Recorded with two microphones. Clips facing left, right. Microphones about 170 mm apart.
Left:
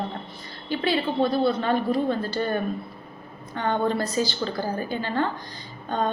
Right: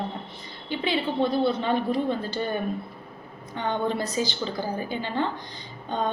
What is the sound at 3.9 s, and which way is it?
A woman's voice, 15° right (ahead or behind).